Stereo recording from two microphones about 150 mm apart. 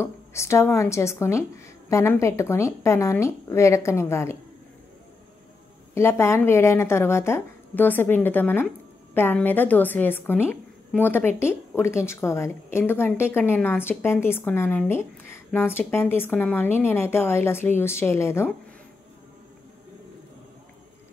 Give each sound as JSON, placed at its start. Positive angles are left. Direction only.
{"t": 0.0, "sound": "speech", "side_deg": 20}
{"t": 5.9, "sound": "a woman's voice", "side_deg": 15}